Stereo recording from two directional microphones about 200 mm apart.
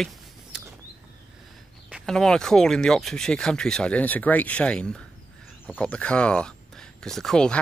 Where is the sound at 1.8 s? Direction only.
Centre (ahead or behind).